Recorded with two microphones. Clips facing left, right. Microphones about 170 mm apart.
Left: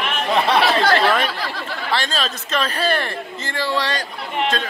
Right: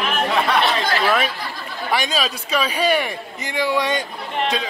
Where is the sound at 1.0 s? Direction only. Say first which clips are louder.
Left 1 dB; 5° right (ahead or behind).